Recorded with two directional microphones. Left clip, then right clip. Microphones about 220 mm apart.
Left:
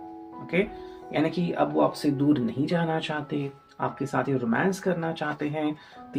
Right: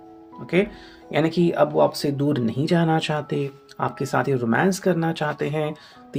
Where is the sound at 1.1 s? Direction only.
55° right (ahead or behind).